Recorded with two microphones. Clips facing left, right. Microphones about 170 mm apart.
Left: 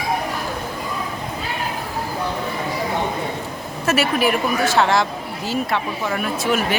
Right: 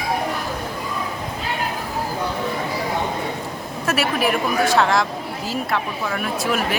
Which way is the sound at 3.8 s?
Centre (ahead or behind).